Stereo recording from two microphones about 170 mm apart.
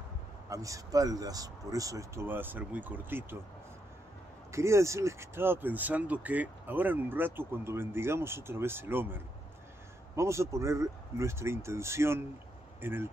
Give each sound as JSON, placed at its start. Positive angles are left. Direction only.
{"t": 0.5, "sound": "speech", "side_deg": -20}
{"t": 4.5, "sound": "speech", "side_deg": -15}